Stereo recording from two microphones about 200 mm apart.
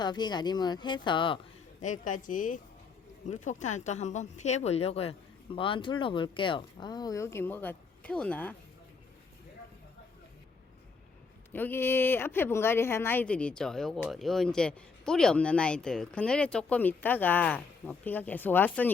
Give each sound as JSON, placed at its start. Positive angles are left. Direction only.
{"t": 0.0, "sound": "speech", "side_deg": 20}
{"t": 1.8, "sound": "speech", "side_deg": 40}
{"t": 11.5, "sound": "speech", "side_deg": 10}